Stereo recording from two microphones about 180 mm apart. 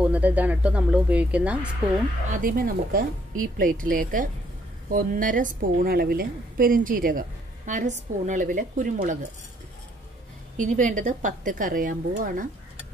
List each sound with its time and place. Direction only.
0.0 s speech: 10° right (ahead or behind)
2.2 s a woman's voice: 45° right (ahead or behind)
10.6 s a woman's voice: 45° right (ahead or behind)